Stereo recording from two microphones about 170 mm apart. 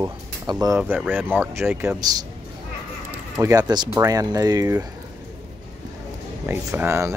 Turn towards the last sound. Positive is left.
turn(degrees=-15)  # may be behind; listen again after turning